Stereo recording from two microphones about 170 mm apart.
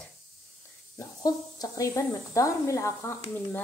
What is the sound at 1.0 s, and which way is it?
Speech, 20° left (ahead or behind).